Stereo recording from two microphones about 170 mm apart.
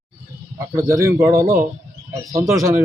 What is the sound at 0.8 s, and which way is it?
Speech, 15° right (ahead or behind).